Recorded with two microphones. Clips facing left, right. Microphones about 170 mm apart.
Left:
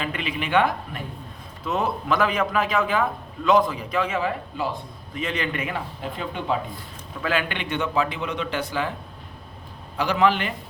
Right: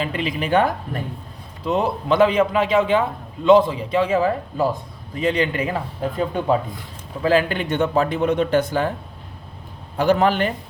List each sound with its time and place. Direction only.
0.0 s a man's voice: 35° right (ahead or behind)
10.0 s a man's voice: 45° right (ahead or behind)